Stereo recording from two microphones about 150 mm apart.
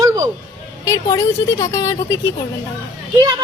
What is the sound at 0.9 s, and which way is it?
A woman's voice, 20° left (ahead or behind).